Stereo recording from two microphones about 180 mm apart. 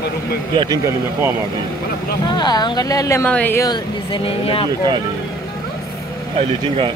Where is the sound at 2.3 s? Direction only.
25° left (ahead or behind).